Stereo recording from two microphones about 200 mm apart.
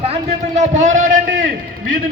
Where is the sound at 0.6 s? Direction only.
35° right (ahead or behind).